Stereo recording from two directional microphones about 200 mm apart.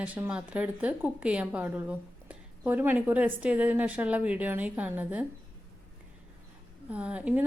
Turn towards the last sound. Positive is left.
turn(degrees=-5)  # may be behind; listen again after turning